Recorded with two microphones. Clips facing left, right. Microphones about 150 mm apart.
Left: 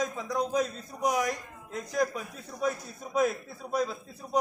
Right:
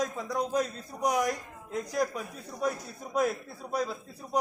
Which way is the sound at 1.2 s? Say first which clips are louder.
Right 1 dB; 5° right (ahead or behind).